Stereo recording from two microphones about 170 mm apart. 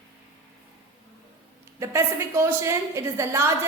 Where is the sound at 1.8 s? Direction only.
15° right (ahead or behind).